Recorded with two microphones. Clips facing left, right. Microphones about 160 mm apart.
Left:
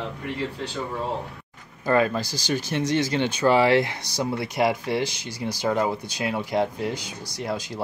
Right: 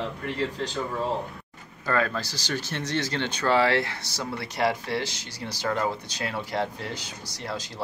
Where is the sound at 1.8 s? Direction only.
15° left (ahead or behind).